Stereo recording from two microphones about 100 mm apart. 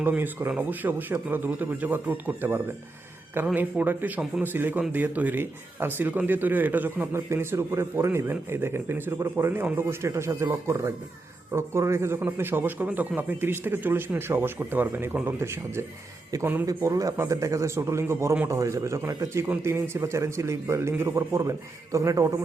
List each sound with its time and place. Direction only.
0.0 s speech: 20° right (ahead or behind)